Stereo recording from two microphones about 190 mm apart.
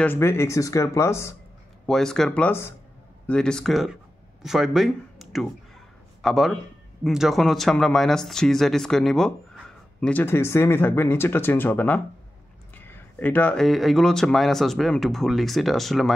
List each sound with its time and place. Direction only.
0.0 s speech: 10° left (ahead or behind)
1.9 s speech: centre (ahead or behind)